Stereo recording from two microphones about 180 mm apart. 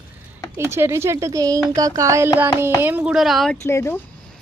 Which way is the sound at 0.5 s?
15° right (ahead or behind).